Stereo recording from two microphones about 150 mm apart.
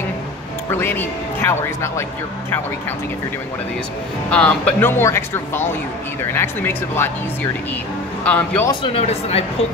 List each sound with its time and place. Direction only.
0.7 s speech: 15° left (ahead or behind)
4.3 s speech: 10° left (ahead or behind)
8.2 s a man's voice: 10° left (ahead or behind)
8.9 s speech: 40° left (ahead or behind)